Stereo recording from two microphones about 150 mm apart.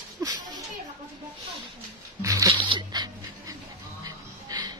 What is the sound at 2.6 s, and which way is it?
Dog, 35° right (ahead or behind).